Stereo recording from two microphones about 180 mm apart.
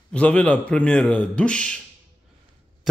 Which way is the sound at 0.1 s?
5° left (ahead or behind).